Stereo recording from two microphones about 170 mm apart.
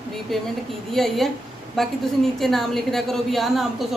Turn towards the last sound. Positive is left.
turn(degrees=0)  # may be behind; listen again after turning